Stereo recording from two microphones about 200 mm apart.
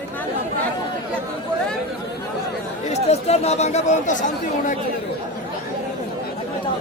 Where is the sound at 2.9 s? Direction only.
30° left (ahead or behind).